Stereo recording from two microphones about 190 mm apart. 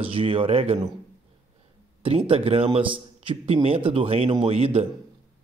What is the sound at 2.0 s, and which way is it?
A man's voice, 30° right (ahead or behind).